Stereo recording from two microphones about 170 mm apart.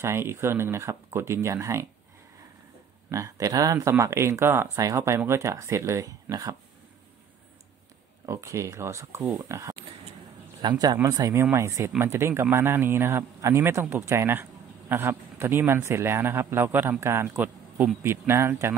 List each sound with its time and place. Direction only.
0.0 s a man's voice: 15° right (ahead or behind)
3.1 s a man's voice: 20° right (ahead or behind)
8.3 s a man's voice: 15° right (ahead or behind)